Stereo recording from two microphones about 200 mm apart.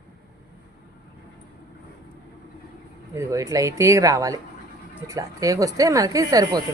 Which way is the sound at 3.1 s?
15° right (ahead or behind).